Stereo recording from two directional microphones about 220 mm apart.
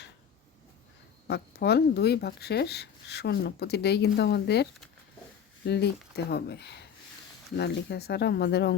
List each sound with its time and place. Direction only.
1.3 s speech: 50° left (ahead or behind)